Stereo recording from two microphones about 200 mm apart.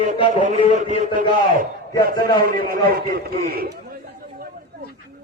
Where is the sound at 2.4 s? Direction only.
45° right (ahead or behind).